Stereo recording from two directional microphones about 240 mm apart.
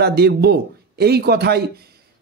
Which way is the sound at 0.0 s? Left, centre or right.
Right.